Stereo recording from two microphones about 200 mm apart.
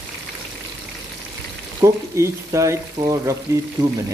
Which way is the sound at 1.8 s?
15° right (ahead or behind).